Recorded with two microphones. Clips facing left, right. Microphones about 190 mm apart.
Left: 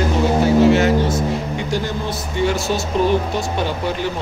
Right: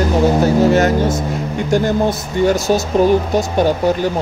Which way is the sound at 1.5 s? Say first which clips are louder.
Right 7 dB; 50° right (ahead or behind).